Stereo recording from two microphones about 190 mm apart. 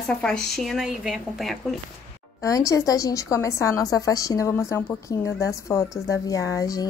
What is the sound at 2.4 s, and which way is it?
A woman's voice, 20° left (ahead or behind).